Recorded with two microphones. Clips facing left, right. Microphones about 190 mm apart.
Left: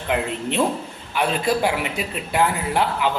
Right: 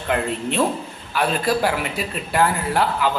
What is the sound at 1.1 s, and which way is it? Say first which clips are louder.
Speech: even; 15° left (ahead or behind).